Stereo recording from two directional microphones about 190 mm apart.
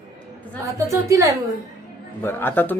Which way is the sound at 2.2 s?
10° left (ahead or behind).